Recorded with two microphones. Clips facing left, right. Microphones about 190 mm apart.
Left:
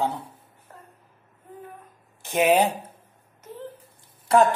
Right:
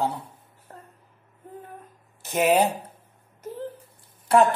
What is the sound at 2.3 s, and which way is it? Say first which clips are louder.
Speech: left 1 dB; 10° left (ahead or behind).